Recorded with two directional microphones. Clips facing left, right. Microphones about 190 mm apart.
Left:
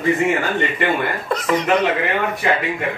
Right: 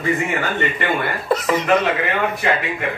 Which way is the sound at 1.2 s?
5° right (ahead or behind).